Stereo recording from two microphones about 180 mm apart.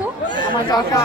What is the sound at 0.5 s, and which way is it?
Speech, 20° left (ahead or behind).